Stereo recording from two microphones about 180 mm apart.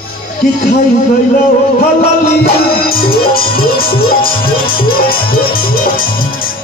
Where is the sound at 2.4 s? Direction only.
55° left (ahead or behind).